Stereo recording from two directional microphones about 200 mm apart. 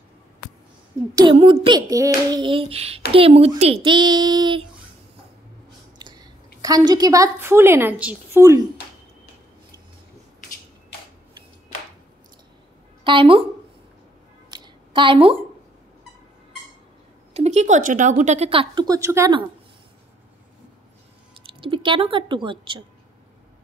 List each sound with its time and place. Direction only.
1.1 s child singing: 25° right (ahead or behind)
5.9 s a woman's voice: 20° right (ahead or behind)
13.0 s a woman's voice: 25° right (ahead or behind)
14.5 s a sound: 25° right (ahead or behind)
17.3 s speech: 35° right (ahead or behind); by 19.4 s 15° right (ahead or behind)
21.5 s speech: 25° right (ahead or behind)